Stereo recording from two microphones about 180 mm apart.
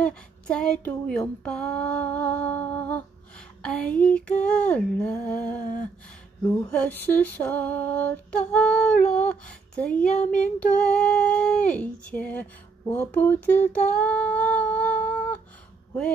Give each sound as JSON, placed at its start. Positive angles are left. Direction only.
{"t": 0.0, "sound": "female singing", "side_deg": 5}
{"t": 6.4, "sound": "speech", "side_deg": 20}
{"t": 6.7, "sound": "female singing", "side_deg": 10}
{"t": 13.1, "sound": "humming", "side_deg": 10}